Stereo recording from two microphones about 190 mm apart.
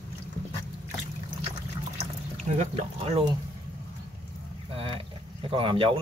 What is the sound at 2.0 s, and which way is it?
Water, 35° right (ahead or behind).